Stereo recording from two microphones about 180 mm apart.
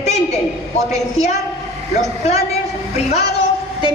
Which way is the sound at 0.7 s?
40° left (ahead or behind).